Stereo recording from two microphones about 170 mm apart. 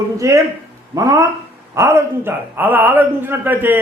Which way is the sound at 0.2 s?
20° right (ahead or behind).